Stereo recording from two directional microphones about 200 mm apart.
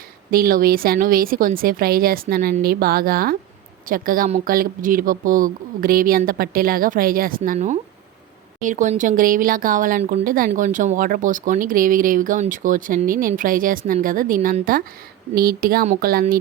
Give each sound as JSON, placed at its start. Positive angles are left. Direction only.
{"t": 0.3, "sound": "speech", "side_deg": -45}